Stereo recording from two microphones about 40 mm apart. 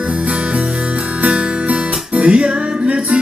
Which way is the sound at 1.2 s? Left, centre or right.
Right.